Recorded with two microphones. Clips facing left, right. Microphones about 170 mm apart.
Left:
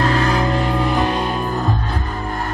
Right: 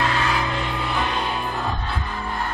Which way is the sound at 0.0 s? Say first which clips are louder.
Left 6 dB; 40° left (ahead or behind).